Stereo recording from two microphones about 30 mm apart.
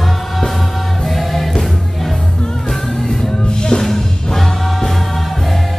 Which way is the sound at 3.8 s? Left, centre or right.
Centre.